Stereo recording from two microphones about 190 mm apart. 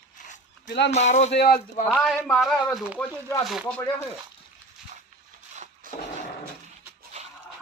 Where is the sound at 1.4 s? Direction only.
55° left (ahead or behind).